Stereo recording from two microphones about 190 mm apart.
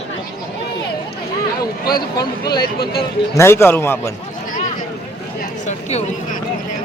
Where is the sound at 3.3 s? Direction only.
15° left (ahead or behind).